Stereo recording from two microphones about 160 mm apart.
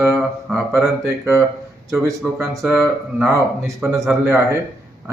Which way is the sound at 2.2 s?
5° right (ahead or behind).